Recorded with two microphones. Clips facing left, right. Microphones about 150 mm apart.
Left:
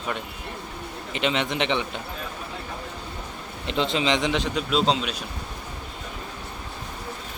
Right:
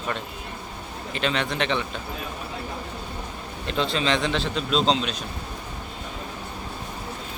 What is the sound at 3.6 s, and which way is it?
A man's voice, 20° left (ahead or behind).